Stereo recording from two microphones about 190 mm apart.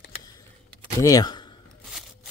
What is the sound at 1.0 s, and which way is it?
Speech, 20° left (ahead or behind).